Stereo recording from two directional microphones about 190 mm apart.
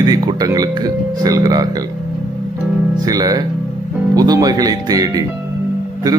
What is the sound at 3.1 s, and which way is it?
Speech, 20° right (ahead or behind).